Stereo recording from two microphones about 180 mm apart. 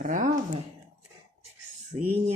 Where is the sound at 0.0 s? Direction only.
50° right (ahead or behind).